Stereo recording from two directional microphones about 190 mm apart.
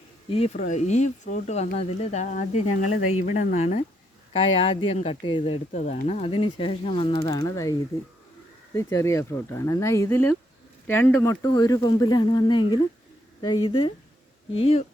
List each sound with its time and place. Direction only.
0.3 s speech: 30° left (ahead or behind)